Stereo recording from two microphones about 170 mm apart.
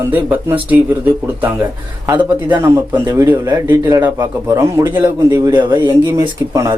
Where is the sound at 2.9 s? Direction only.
15° right (ahead or behind).